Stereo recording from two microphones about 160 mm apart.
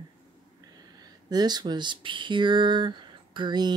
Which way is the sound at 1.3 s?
25° right (ahead or behind).